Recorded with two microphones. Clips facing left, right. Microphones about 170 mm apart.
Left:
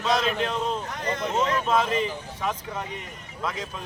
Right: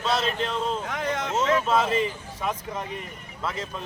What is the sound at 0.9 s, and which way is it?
Speech, 90° right.